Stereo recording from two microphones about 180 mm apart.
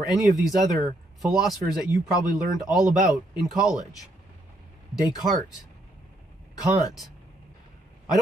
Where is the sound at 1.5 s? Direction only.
20° left (ahead or behind).